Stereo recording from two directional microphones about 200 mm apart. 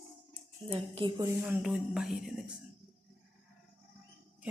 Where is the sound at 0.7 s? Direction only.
25° right (ahead or behind).